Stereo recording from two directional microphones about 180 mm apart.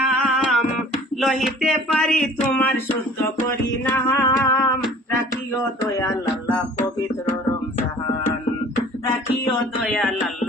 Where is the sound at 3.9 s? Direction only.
10° left (ahead or behind).